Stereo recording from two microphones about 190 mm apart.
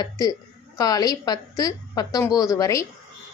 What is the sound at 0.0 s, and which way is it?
A woman's voice, 20° left (ahead or behind).